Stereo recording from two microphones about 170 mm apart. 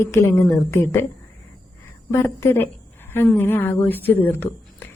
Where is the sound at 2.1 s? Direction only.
15° left (ahead or behind).